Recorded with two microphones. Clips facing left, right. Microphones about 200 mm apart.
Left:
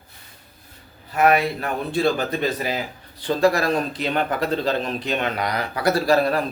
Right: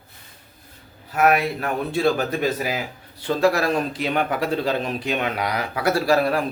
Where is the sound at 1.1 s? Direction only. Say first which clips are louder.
Left 1 dB; centre (ahead or behind).